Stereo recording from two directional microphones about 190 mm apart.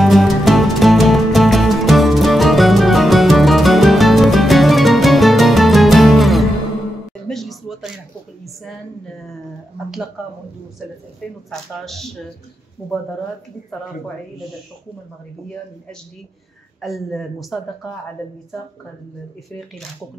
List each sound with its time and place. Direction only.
0.0 s music: centre (ahead or behind)
7.2 s a sound: centre (ahead or behind)
11.5 s speech: centre (ahead or behind)
16.8 s speech: centre (ahead or behind)